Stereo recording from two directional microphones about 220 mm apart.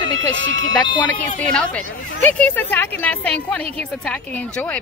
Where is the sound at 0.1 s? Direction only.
60° right (ahead or behind).